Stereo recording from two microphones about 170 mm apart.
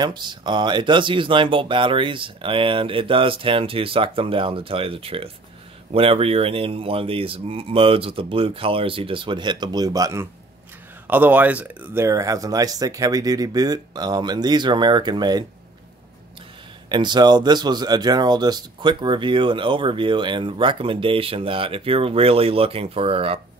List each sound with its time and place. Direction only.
0.0 s speech: 25° right (ahead or behind)
16.9 s speech: 25° right (ahead or behind)